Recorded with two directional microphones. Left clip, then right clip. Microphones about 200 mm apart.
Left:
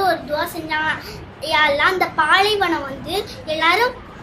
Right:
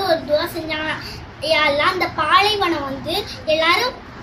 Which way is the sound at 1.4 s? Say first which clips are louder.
Even; 15° left (ahead or behind).